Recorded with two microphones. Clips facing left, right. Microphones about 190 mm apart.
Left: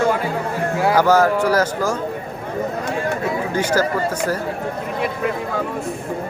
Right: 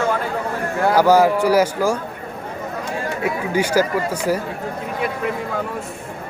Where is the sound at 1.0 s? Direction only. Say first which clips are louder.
Right 2 dB; 10° right (ahead or behind).